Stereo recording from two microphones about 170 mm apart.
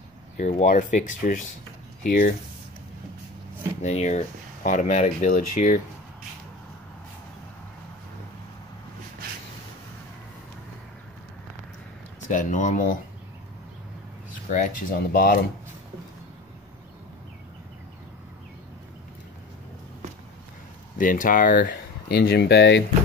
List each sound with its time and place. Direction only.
0.4 s speech: 40° left (ahead or behind)
3.8 s speech: 40° left (ahead or behind)
12.2 s speech: 45° left (ahead or behind)
14.5 s speech: 50° left (ahead or behind)
21.0 s speech: 50° left (ahead or behind); by 22.8 s 85° left